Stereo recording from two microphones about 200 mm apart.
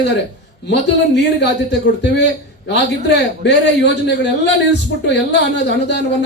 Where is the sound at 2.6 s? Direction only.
60° left (ahead or behind).